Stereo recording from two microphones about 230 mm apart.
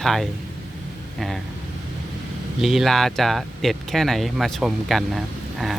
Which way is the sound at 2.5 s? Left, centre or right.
Centre.